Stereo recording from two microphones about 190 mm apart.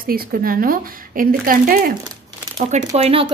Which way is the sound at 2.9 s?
30° right (ahead or behind).